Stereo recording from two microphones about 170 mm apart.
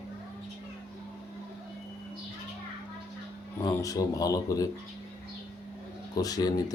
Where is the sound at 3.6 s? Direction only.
20° left (ahead or behind).